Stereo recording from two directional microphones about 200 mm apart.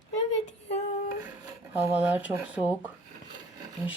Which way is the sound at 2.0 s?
10° right (ahead or behind).